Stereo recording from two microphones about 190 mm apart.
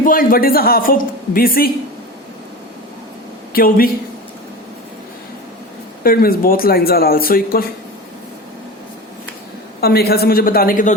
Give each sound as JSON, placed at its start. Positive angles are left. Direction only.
{"t": 0.0, "sound": "a woman's voice", "side_deg": 50}
{"t": 3.5, "sound": "a woman's voice", "side_deg": 50}
{"t": 6.0, "sound": "a woman's voice", "side_deg": 50}
{"t": 9.8, "sound": "a woman's voice", "side_deg": 55}